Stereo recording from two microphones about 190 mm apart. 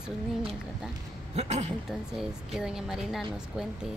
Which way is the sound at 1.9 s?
Centre (ahead or behind).